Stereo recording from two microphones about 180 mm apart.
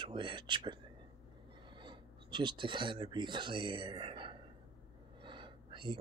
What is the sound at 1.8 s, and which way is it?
Speech, 25° right (ahead or behind).